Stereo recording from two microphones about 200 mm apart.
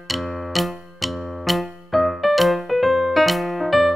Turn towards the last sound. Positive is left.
turn(degrees=0)  # may be behind; listen again after turning